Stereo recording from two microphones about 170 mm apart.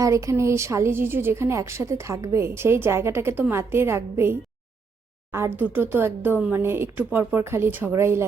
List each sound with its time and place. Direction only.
0.0 s a woman's voice: 20° right (ahead or behind)